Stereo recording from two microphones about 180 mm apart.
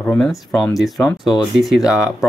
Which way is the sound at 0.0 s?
5° left (ahead or behind).